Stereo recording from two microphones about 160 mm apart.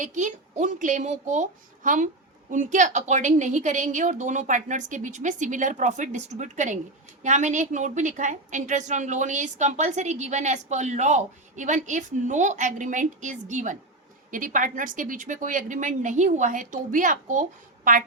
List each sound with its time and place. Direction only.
0.0 s a woman's voice: 50° right (ahead or behind)